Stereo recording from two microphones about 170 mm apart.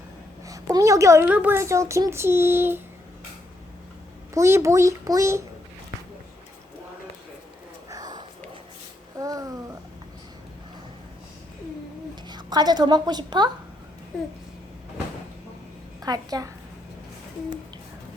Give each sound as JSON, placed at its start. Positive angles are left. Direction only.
{"t": 0.4, "sound": "a woman's voice", "side_deg": -20}
{"t": 1.3, "sound": "child singing", "side_deg": -10}
{"t": 4.4, "sound": "child singing", "side_deg": -15}
{"t": 7.9, "sound": "sniff", "side_deg": -20}
{"t": 9.1, "sound": "a sound", "side_deg": -20}
{"t": 12.3, "sound": "a woman's voice", "side_deg": -25}
{"t": 14.1, "sound": "a sound", "side_deg": 5}
{"t": 16.0, "sound": "a woman's voice", "side_deg": -20}